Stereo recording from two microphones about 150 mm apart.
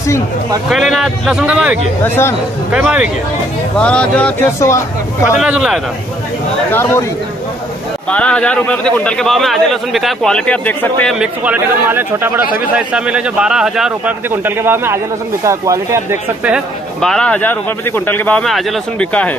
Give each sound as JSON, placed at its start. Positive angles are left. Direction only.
{"t": 0.7, "sound": "a man's voice", "side_deg": 0}
{"t": 3.7, "sound": "a man's voice", "side_deg": 5}
{"t": 4.6, "sound": "speech", "side_deg": 20}
{"t": 5.4, "sound": "a man's voice", "side_deg": -5}
{"t": 6.7, "sound": "a man's voice", "side_deg": 15}
{"t": 8.1, "sound": "a man's voice", "side_deg": 10}
{"t": 11.1, "sound": "speech", "side_deg": -10}
{"t": 16.5, "sound": "a man's voice", "side_deg": 5}